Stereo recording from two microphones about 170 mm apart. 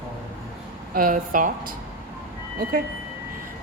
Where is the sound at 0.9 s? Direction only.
55° right (ahead or behind).